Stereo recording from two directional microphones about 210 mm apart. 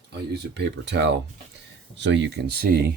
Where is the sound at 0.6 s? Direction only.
55° right (ahead or behind).